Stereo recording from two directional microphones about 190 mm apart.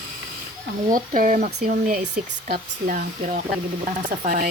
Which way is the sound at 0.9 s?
45° right (ahead or behind).